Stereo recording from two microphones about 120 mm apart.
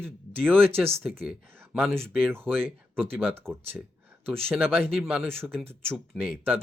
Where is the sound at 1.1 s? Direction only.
5° right (ahead or behind).